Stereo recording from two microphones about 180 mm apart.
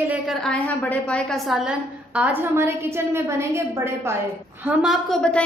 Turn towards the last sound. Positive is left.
turn(degrees=0)  # may be behind; listen again after turning